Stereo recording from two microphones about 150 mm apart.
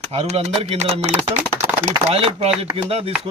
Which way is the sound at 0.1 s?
40° right (ahead or behind).